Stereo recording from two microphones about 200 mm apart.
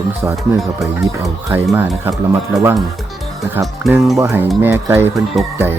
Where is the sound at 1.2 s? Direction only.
15° right (ahead or behind).